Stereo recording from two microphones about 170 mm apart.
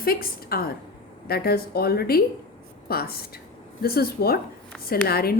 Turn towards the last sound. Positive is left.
turn(degrees=65)  # may be behind; listen again after turning